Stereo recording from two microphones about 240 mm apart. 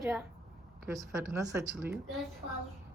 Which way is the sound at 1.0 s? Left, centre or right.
Centre.